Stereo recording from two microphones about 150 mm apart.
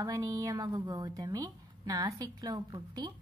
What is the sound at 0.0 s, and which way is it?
A woman's voice, 20° right (ahead or behind).